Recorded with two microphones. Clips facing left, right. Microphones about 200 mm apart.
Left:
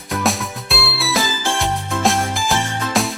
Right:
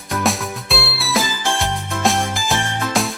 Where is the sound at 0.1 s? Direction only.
Centre (ahead or behind).